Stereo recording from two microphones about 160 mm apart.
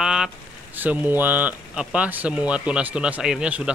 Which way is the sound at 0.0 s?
5° right (ahead or behind).